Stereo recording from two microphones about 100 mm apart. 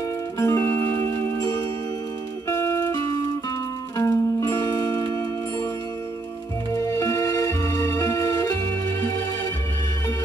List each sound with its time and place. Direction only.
0.4 s music: 30° left (ahead or behind)
6.7 s music: 30° left (ahead or behind)